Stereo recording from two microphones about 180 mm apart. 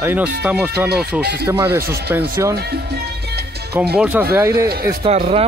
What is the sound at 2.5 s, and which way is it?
Music, 65° right (ahead or behind).